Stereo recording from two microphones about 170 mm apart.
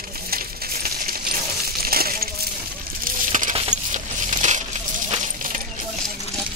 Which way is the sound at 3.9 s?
45° right (ahead or behind).